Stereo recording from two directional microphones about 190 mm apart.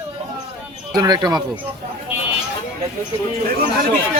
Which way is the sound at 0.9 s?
20° right (ahead or behind).